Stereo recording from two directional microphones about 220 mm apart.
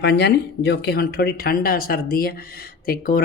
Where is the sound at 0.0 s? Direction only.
50° left (ahead or behind).